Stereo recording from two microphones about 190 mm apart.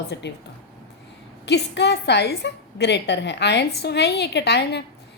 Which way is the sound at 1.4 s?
65° left (ahead or behind).